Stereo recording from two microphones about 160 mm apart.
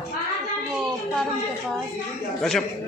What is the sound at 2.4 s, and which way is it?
Speech, 5° left (ahead or behind).